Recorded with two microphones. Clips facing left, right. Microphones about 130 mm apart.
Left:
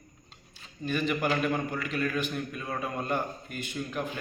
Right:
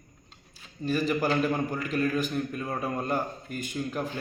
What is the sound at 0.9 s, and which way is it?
A man's voice, 35° right (ahead or behind).